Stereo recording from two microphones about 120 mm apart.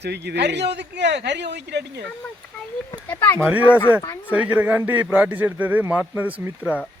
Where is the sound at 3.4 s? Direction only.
15° right (ahead or behind).